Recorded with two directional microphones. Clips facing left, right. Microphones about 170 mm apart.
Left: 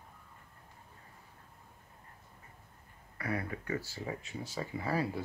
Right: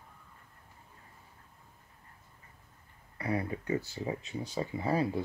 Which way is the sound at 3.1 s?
20° right (ahead or behind).